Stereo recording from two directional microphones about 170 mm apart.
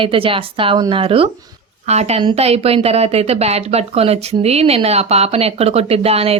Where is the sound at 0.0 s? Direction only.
30° right (ahead or behind).